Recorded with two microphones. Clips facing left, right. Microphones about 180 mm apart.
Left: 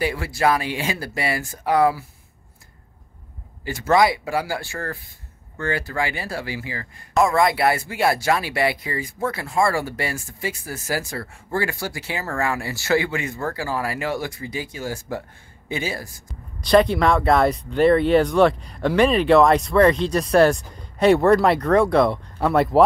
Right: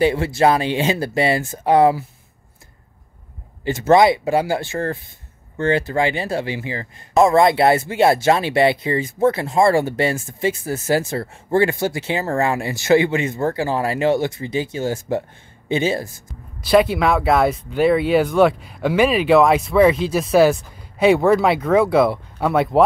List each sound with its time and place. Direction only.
0.0 s speech: 25° right (ahead or behind)
3.6 s speech: 25° right (ahead or behind)
16.6 s speech: 5° right (ahead or behind)